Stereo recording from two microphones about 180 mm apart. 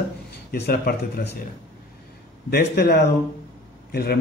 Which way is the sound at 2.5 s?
60° left (ahead or behind).